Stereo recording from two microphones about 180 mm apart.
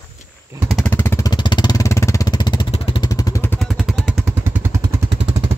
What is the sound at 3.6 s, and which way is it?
Vehicle, centre (ahead or behind).